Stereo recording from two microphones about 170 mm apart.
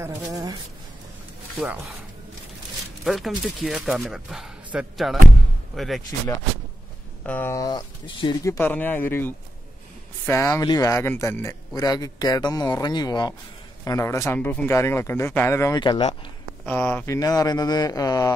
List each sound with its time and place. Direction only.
0.0 s speech: 20° right (ahead or behind)
3.0 s speech: centre (ahead or behind)
7.2 s speech: 10° left (ahead or behind)
8.5 s speech: 10° left (ahead or behind); by 16.2 s 30° left (ahead or behind)
16.6 s speech: 10° left (ahead or behind)